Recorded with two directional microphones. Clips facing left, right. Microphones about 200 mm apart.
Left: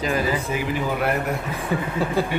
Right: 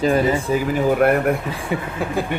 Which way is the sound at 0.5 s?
45° right (ahead or behind).